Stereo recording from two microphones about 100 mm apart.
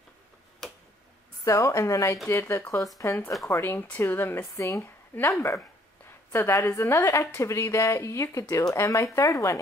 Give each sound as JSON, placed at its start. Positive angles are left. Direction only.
{"t": 0.6, "sound": "tick-tock", "side_deg": 5}
{"t": 1.4, "sound": "a woman's voice", "side_deg": 30}
{"t": 4.8, "sound": "a woman's voice", "side_deg": 20}